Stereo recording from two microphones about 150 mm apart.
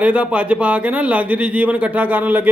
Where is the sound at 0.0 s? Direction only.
10° right (ahead or behind).